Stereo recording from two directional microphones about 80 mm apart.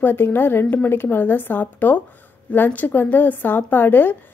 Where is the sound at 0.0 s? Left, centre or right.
Left.